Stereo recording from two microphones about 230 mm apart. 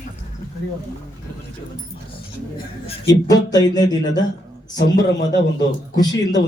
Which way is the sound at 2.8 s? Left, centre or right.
Centre.